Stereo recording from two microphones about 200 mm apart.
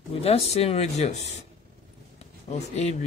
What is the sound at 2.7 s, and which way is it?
Speech, 35° left (ahead or behind).